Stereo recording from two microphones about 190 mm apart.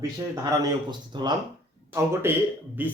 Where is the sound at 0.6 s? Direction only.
25° right (ahead or behind).